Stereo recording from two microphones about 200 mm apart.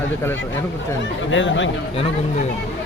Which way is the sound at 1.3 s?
70° left (ahead or behind).